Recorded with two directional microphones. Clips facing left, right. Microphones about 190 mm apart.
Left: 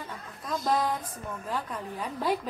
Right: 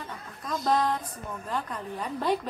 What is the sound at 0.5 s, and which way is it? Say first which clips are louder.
A woman's voice: right 2 dB; 5° left (ahead or behind).